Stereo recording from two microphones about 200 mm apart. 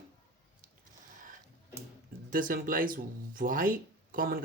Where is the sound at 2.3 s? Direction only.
45° right (ahead or behind).